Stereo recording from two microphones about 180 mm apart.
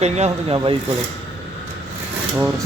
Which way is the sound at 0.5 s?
25° right (ahead or behind).